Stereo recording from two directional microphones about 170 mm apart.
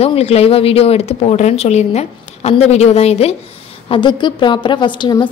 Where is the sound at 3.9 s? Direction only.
25° left (ahead or behind).